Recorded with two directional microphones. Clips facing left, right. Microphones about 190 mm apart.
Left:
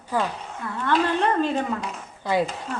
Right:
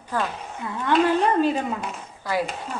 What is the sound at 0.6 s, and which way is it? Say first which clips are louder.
Speech: right 2 dB; 15° right (ahead or behind).